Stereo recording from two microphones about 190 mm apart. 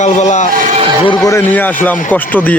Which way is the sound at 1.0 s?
20° left (ahead or behind).